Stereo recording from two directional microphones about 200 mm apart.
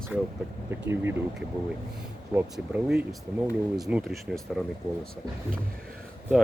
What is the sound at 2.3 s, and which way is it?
Speech, 5° right (ahead or behind).